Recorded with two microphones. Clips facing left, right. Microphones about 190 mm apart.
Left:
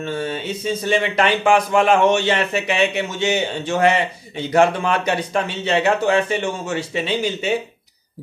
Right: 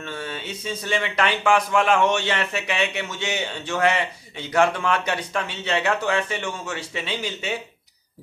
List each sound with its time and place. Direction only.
0.0 s a man's voice: 30° left (ahead or behind)